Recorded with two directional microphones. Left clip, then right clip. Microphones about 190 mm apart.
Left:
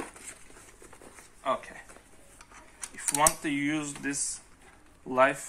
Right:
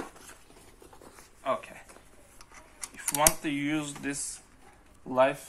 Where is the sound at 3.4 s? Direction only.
30° right (ahead or behind).